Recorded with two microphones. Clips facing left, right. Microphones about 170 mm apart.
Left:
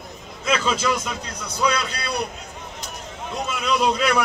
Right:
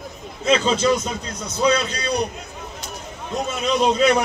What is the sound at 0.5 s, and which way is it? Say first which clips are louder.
Speech: right 4 dB; 30° right (ahead or behind).